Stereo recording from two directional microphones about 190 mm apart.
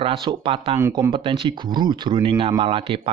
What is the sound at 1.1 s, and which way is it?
Speech, 25° right (ahead or behind).